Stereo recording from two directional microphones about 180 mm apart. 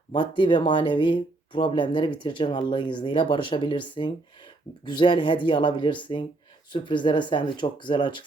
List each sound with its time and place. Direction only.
0.1 s speech: 25° left (ahead or behind)